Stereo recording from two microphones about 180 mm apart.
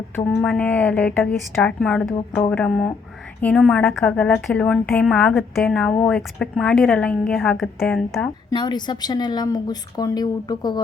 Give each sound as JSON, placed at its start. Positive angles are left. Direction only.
{"t": 0.3, "sound": "a woman's voice", "side_deg": 5}
{"t": 8.4, "sound": "a woman's voice", "side_deg": 25}